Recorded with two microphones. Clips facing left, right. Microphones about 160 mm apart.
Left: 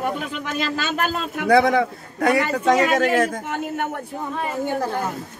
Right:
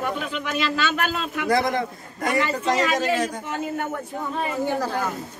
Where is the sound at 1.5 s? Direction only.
70° left (ahead or behind).